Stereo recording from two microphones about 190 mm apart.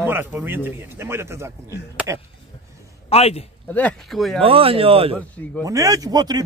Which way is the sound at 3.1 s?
35° left (ahead or behind).